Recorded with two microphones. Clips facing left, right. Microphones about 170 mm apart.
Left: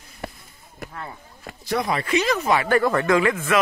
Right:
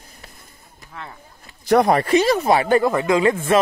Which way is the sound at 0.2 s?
70° left (ahead or behind).